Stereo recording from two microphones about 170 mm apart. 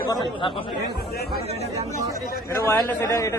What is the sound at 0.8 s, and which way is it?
Speech, 70° left (ahead or behind).